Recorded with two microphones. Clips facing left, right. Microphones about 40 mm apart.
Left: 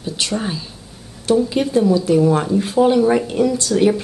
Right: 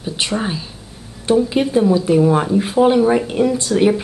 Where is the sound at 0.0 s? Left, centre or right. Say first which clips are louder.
Right 1 dB; centre.